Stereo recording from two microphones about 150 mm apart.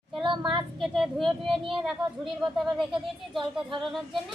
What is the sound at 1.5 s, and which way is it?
Speech, 35° right (ahead or behind).